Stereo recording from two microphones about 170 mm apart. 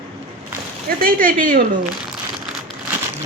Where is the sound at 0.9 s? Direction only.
55° right (ahead or behind).